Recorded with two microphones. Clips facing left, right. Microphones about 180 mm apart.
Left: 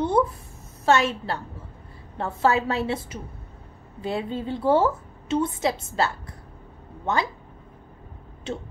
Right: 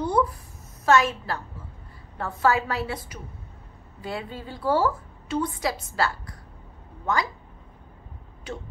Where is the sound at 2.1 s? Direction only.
25° left (ahead or behind).